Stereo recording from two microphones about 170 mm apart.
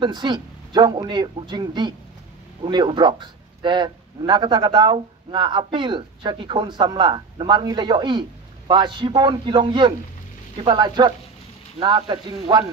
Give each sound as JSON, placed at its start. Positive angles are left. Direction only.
{"t": 0.0, "sound": "a man's voice", "side_deg": -25}